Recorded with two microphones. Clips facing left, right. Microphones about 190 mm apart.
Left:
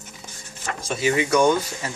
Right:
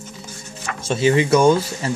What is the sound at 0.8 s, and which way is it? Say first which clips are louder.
Speech: right 5 dB; 25° right (ahead or behind).